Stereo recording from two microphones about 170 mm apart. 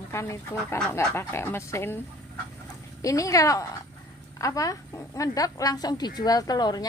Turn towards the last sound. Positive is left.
turn(degrees=25)  # may be behind; listen again after turning